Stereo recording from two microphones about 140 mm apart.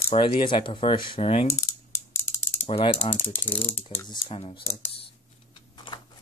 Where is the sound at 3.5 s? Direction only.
15° left (ahead or behind).